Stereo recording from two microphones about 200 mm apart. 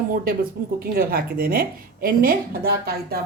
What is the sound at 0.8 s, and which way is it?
A woman's voice, 50° right (ahead or behind).